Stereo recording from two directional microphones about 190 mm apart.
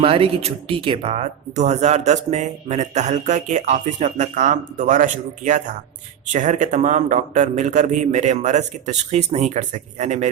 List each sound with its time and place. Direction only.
0.0 s speech: 30° right (ahead or behind)